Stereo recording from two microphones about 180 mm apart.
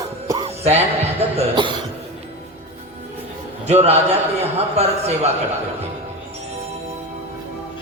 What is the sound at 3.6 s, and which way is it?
Speech, 35° right (ahead or behind).